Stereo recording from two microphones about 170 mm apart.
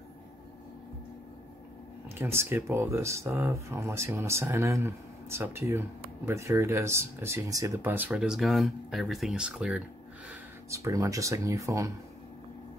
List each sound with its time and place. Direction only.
2.0 s speech: 15° right (ahead or behind)
10.7 s speech: 20° right (ahead or behind)